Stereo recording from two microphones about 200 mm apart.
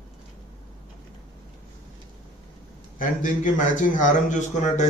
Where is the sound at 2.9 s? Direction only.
40° left (ahead or behind).